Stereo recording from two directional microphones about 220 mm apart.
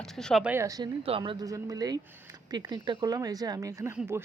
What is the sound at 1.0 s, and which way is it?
Speech, 25° right (ahead or behind).